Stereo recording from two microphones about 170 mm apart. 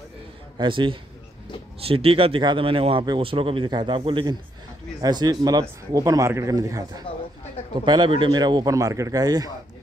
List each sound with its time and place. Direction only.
0.6 s speech: 30° right (ahead or behind)
7.8 s speech: 25° right (ahead or behind)